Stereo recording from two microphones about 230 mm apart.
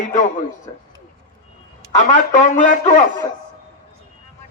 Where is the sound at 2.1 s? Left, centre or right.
Left.